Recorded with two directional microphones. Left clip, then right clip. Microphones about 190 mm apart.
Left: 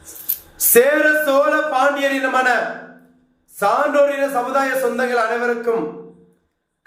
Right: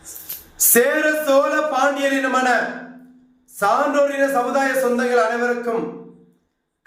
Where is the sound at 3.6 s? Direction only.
Centre (ahead or behind).